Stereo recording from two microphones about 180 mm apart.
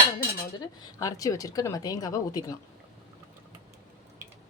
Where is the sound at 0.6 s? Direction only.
20° left (ahead or behind).